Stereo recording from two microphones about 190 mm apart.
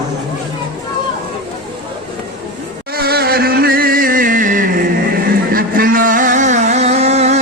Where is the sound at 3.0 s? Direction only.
55° right (ahead or behind).